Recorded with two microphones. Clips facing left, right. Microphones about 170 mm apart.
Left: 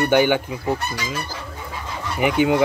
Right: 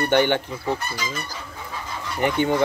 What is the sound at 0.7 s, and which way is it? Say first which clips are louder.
Speech: left 3 dB; 80° left.